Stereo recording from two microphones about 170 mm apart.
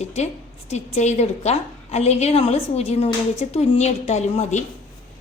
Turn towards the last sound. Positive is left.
turn(degrees=40)  # may be behind; listen again after turning